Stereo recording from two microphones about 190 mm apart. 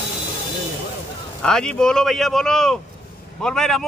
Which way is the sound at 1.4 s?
5° left (ahead or behind).